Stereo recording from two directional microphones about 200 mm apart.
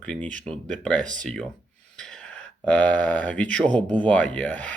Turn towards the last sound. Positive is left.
turn(degrees=5)  # may be behind; listen again after turning